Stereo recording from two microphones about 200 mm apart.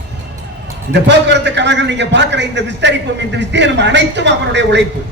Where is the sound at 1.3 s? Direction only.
60° right (ahead or behind).